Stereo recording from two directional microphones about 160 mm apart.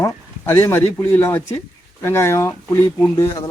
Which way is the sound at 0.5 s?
10° left (ahead or behind).